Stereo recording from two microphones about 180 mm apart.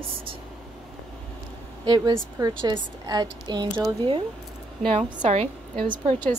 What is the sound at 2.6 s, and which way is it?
Speech, 25° right (ahead or behind).